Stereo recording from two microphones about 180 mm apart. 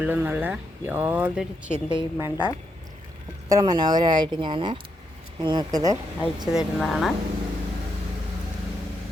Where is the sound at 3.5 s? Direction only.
20° right (ahead or behind).